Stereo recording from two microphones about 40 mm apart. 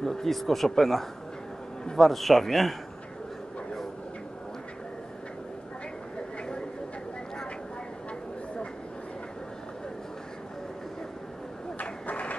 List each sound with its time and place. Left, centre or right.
0.0 s speech: centre
11.8 s owl: left